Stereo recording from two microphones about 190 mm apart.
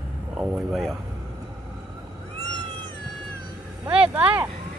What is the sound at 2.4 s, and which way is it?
Cat, 20° right (ahead or behind).